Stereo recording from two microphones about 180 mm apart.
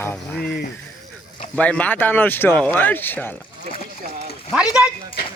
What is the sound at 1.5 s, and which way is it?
Speech, 5° left (ahead or behind).